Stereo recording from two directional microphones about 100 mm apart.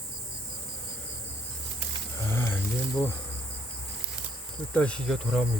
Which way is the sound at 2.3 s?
25° left (ahead or behind).